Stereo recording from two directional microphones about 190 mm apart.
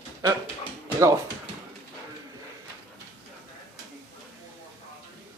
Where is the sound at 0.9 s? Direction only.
15° right (ahead or behind).